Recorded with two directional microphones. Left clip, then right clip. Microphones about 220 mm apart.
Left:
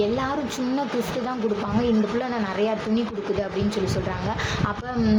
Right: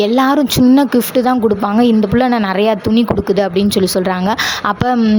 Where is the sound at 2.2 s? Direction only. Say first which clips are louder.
Right 12 dB; 45° right (ahead or behind).